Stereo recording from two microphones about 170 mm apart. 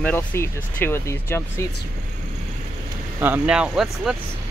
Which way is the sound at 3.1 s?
10° right (ahead or behind).